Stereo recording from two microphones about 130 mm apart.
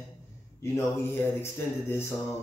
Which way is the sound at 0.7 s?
15° left (ahead or behind).